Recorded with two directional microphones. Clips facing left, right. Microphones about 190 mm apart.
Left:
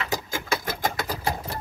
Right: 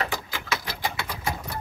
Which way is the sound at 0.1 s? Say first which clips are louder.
Left 3 dB; 45° left (ahead or behind).